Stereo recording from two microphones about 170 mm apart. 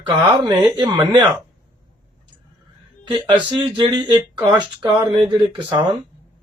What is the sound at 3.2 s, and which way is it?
Speech, 30° right (ahead or behind).